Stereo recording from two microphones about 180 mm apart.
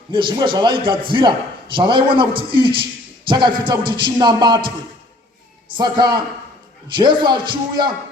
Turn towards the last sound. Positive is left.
turn(degrees=-25)  # may be behind; listen again after turning